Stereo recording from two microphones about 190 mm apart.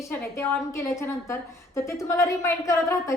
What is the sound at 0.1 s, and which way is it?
A woman's voice, 10° left (ahead or behind).